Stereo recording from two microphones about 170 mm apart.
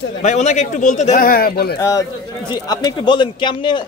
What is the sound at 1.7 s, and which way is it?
A man's voice, 20° left (ahead or behind).